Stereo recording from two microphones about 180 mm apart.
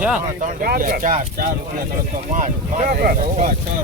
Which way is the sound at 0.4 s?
50° right (ahead or behind).